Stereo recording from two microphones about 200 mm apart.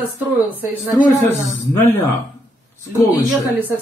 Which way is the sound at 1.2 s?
10° left (ahead or behind).